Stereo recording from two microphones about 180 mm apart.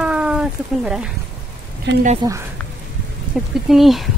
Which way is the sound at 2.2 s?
20° right (ahead or behind).